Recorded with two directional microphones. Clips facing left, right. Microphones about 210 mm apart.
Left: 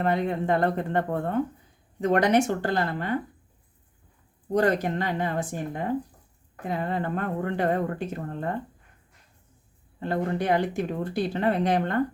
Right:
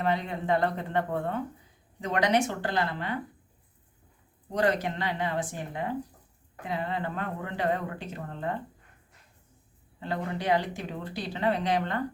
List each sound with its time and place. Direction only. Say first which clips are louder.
0.0 s speech: left 4 dB; 50° left (ahead or behind)
4.5 s speech: left 4 dB; 45° left (ahead or behind)
10.0 s speech: left 5 dB; 50° left (ahead or behind)